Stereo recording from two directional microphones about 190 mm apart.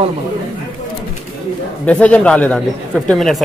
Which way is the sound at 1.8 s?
5° left (ahead or behind).